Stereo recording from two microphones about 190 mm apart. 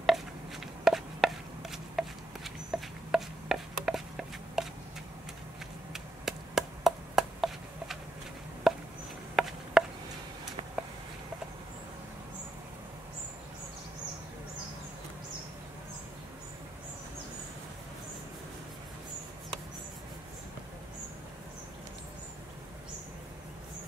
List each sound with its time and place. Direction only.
0.0 s chopping: centre (ahead or behind)
5.9 s chop: centre (ahead or behind)